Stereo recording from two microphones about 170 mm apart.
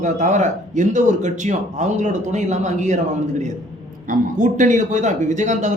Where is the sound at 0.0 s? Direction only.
45° right (ahead or behind).